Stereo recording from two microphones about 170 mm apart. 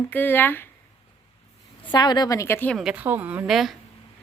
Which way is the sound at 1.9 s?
25° left (ahead or behind).